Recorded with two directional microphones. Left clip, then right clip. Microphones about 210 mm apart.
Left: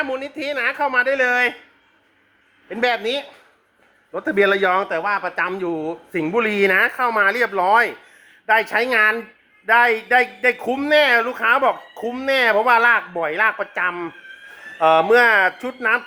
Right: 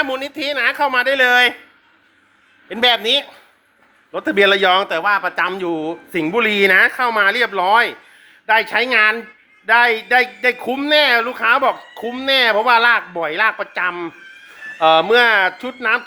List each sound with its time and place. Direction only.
0.5 s speech: centre (ahead or behind)
2.6 s speech: 15° right (ahead or behind)
4.1 s a man's voice: 5° right (ahead or behind)
5.5 s a man's voice: 5° right (ahead or behind)